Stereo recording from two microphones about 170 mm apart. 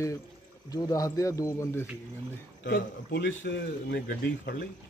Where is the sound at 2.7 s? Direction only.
85° left.